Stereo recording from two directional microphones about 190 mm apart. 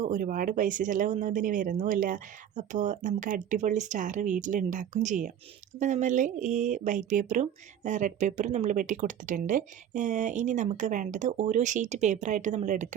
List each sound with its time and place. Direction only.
0.0 s speech: 45° right (ahead or behind)